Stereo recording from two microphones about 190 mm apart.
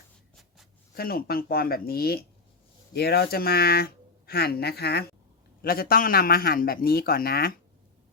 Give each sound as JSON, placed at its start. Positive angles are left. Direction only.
{"t": 0.9, "sound": "a man's voice", "side_deg": 50}